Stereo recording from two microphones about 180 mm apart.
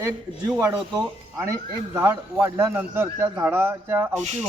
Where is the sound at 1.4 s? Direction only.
15° right (ahead or behind).